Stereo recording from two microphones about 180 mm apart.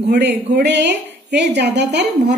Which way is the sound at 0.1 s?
70° right (ahead or behind).